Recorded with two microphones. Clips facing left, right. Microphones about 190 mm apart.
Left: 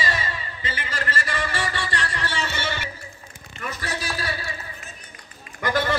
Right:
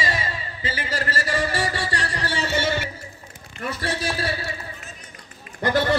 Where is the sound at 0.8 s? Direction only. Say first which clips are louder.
Right 2 dB; 35° right (ahead or behind).